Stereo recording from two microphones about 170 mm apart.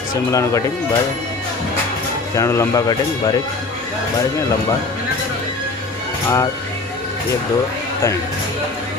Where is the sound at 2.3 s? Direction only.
15° left (ahead or behind).